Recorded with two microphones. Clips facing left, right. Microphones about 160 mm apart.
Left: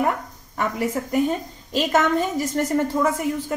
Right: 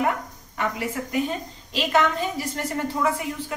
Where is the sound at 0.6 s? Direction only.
45° left (ahead or behind).